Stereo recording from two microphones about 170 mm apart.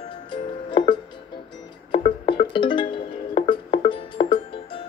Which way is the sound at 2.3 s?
30° left (ahead or behind).